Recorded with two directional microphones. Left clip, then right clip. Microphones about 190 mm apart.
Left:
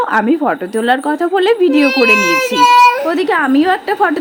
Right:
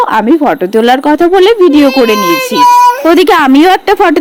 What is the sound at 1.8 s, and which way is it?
A woman's voice, 35° right (ahead or behind).